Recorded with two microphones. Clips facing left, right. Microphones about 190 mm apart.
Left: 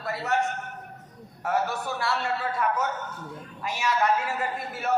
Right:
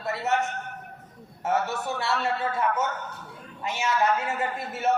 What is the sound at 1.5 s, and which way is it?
Speech, 25° right (ahead or behind).